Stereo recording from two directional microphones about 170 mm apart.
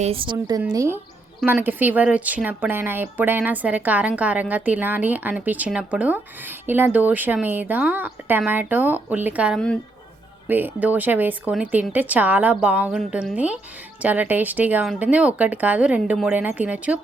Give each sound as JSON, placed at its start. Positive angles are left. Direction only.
{"t": 0.0, "sound": "a woman's voice", "side_deg": -35}